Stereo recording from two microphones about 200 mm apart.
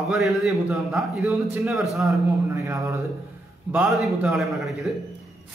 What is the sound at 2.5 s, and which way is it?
Speech, 15° right (ahead or behind).